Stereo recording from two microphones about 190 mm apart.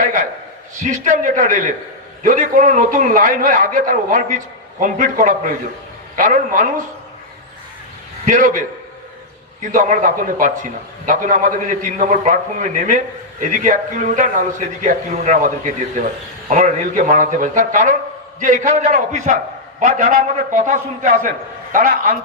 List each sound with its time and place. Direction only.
0.0 s a sound: 40° right (ahead or behind)
0.8 s a man's voice: 40° right (ahead or behind)
8.2 s a man's voice: 40° right (ahead or behind)